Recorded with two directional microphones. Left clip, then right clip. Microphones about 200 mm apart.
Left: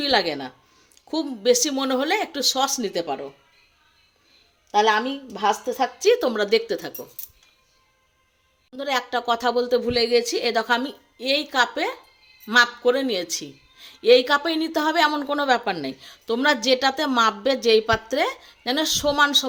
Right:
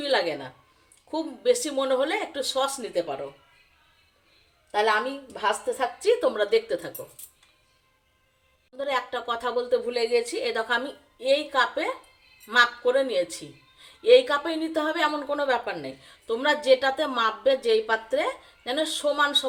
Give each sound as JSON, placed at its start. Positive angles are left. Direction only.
{"t": 0.0, "sound": "a woman's voice", "side_deg": 50}
{"t": 4.7, "sound": "a woman's voice", "side_deg": 40}
{"t": 8.7, "sound": "a woman's voice", "side_deg": 50}